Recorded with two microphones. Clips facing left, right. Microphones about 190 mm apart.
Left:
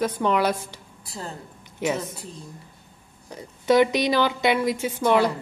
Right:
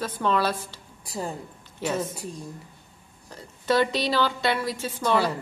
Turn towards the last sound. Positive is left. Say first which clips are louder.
# left 4 dB
turn(degrees=15)  # may be behind; listen again after turning